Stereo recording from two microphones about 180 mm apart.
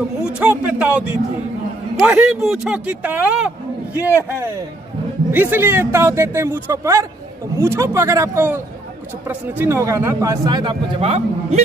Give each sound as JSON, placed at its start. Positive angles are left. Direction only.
{"t": 0.2, "sound": "a man's voice", "side_deg": -5}
{"t": 5.3, "sound": "a man's voice", "side_deg": -10}